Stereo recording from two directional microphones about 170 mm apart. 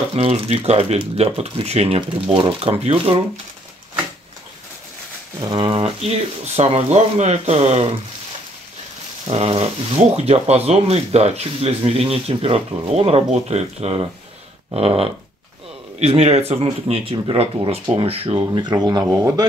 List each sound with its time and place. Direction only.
0.1 s speech: 35° right (ahead or behind)
5.5 s speech: 30° right (ahead or behind)
9.3 s speech: 35° right (ahead or behind); by 19.4 s 20° right (ahead or behind)